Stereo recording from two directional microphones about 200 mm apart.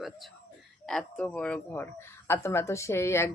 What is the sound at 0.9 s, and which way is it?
A woman's voice, 5° left (ahead or behind).